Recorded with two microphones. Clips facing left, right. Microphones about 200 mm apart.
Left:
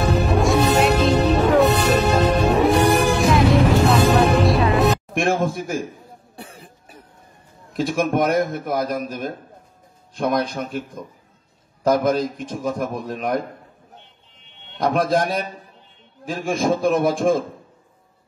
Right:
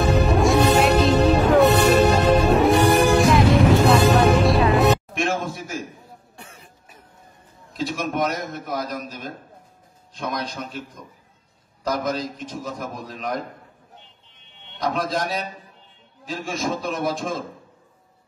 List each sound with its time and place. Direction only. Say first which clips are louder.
0.3 s music: even; centre (ahead or behind)
5.1 s a man's voice: left 5 dB; 50° left (ahead or behind)
6.3 s cough: left 5 dB; 35° left (ahead or behind)
7.7 s a man's voice: left 6 dB; 50° left (ahead or behind)
11.8 s a man's voice: left 7 dB; 50° left (ahead or behind)
14.8 s a man's voice: left 5 dB; 50° left (ahead or behind)